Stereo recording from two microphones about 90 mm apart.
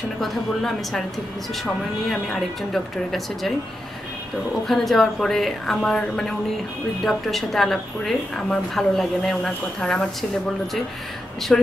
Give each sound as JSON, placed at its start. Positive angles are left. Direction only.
{"t": 0.2, "sound": "a woman's voice", "side_deg": 5}
{"t": 2.0, "sound": "a woman's voice", "side_deg": 5}
{"t": 4.6, "sound": "a woman's voice", "side_deg": 5}
{"t": 11.5, "sound": "a woman's voice", "side_deg": 5}